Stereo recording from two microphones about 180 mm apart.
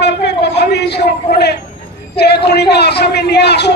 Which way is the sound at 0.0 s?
70° left (ahead or behind).